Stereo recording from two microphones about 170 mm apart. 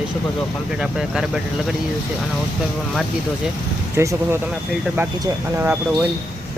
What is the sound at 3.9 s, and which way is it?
Speech, 15° right (ahead or behind).